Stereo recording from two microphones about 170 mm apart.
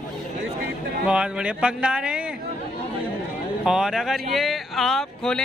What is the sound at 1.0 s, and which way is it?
Speech, 5° right (ahead or behind).